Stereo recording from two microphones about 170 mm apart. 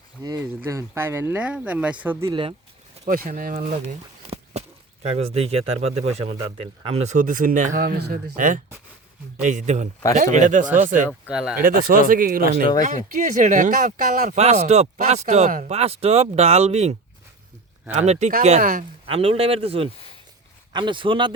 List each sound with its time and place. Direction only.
0.2 s speech: 20° right (ahead or behind)
2.3 s speech: 30° right (ahead or behind)
3.0 s speech: 55° right (ahead or behind)
8.4 s speech: 50° right (ahead or behind)
11.1 s speech: 5° right (ahead or behind)
11.6 s speech: 55° right (ahead or behind)
14.3 s speech: 40° right (ahead or behind)
15.7 s speech: 35° right (ahead or behind)
18.0 s speech: 40° right (ahead or behind)
19.0 s speech: 35° right (ahead or behind)